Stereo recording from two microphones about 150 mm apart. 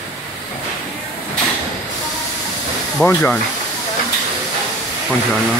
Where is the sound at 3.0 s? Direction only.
10° left (ahead or behind).